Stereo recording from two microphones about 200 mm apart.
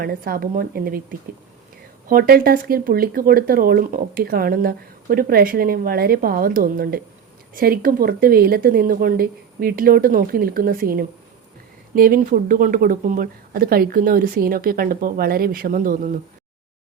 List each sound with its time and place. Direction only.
0.0 s speech: 50° right (ahead or behind)
2.0 s speech: 50° right (ahead or behind)